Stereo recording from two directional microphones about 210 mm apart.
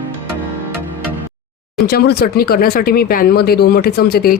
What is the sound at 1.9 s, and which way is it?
Speech, 50° left (ahead or behind).